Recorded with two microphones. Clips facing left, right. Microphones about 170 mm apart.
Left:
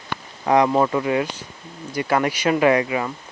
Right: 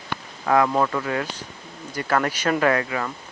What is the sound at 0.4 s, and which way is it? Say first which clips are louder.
Speech: left 3 dB; 20° left (ahead or behind).